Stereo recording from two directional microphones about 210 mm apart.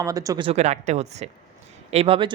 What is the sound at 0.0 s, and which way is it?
Speech, 15° right (ahead or behind).